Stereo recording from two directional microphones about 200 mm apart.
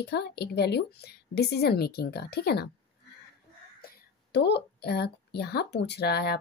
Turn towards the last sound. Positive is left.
turn(degrees=55)  # may be behind; listen again after turning